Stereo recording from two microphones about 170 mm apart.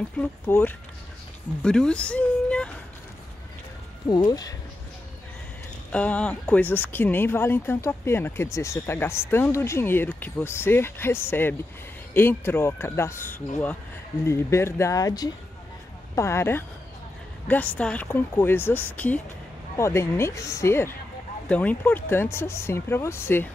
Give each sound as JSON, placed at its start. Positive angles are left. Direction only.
{"t": 0.2, "sound": "speech", "side_deg": 10}
{"t": 4.1, "sound": "speech", "side_deg": 25}
{"t": 5.9, "sound": "speech", "side_deg": 5}